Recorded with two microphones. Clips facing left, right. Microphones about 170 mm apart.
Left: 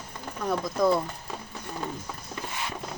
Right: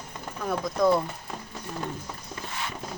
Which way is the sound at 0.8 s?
Centre (ahead or behind).